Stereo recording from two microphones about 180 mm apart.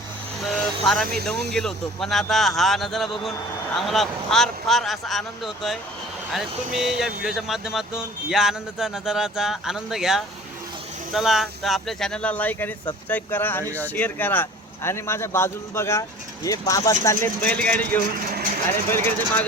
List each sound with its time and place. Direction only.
0.4 s vehicle: centre (ahead or behind)
1.5 s speech: centre (ahead or behind)
18.3 s speech: 55° right (ahead or behind)
18.9 s speech: 10° left (ahead or behind)